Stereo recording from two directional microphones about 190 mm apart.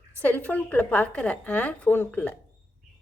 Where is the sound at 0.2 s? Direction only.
10° left (ahead or behind).